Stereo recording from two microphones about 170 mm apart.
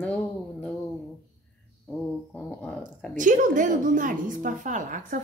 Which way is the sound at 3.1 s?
50° right (ahead or behind).